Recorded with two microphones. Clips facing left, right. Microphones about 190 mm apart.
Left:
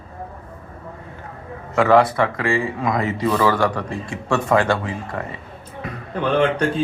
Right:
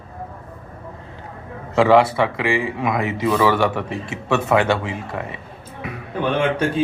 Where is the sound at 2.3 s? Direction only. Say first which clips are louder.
Even; 20° right (ahead or behind).